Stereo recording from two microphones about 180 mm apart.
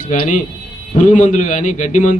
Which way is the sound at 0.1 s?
45° left (ahead or behind).